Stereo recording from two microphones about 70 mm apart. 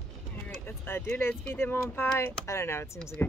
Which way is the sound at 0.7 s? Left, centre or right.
Left.